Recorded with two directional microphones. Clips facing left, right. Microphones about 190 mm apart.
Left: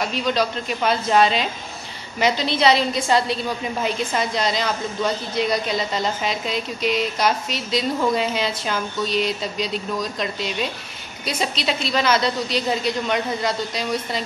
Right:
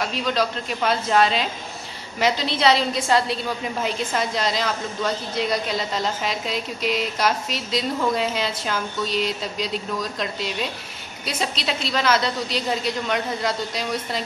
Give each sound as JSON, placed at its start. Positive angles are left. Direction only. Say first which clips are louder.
{"t": 0.0, "sound": "a woman's voice", "louder": "left 1 dB", "side_deg": 0}